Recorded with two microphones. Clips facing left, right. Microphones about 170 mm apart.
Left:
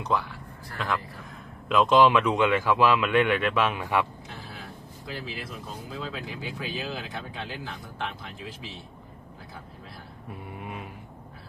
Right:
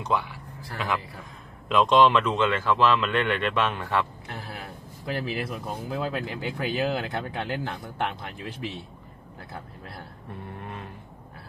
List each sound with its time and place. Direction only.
0.0 s speech: centre (ahead or behind)
4.3 s speech: 65° right (ahead or behind)
10.5 s a sound: 10° left (ahead or behind)